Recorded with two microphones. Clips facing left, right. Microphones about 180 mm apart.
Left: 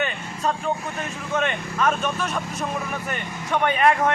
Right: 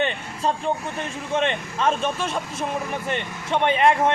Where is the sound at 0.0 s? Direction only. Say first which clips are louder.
Right 2 dB; 30° right (ahead or behind).